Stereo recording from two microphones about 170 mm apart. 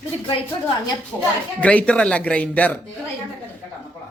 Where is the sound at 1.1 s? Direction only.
10° left (ahead or behind).